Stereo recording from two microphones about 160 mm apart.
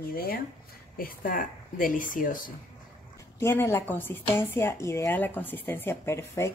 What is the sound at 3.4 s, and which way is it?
Speech, 15° left (ahead or behind).